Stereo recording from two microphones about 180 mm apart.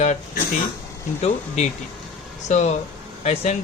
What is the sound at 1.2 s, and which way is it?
Speech, 35° left (ahead or behind).